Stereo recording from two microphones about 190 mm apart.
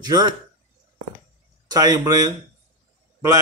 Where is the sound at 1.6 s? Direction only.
20° right (ahead or behind).